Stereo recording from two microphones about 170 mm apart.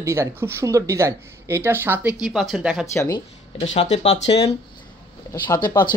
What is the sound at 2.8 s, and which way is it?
Speech, 15° left (ahead or behind).